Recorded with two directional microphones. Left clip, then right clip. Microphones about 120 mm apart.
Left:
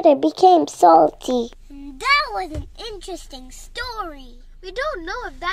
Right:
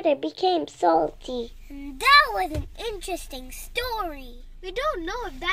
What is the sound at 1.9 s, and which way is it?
Speech, 5° left (ahead or behind).